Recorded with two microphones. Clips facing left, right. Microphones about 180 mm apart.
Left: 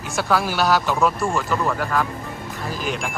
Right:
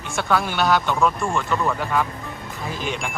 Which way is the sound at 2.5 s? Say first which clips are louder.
Left 1 dB; centre (ahead or behind).